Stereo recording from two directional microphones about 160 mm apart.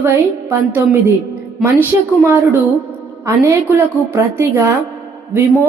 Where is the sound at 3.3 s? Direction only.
15° right (ahead or behind).